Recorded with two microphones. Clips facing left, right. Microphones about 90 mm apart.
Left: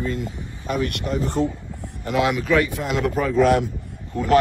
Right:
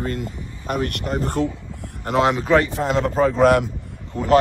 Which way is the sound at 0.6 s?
40° right (ahead or behind).